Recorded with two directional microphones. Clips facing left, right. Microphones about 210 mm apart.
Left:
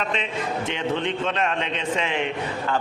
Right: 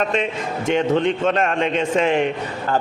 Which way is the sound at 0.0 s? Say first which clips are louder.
Right 5 dB; 45° right (ahead or behind).